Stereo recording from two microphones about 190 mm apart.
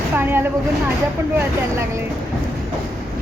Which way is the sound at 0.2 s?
10° right (ahead or behind).